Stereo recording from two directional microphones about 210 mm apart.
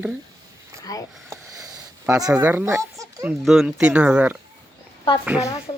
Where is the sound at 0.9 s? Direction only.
15° left (ahead or behind).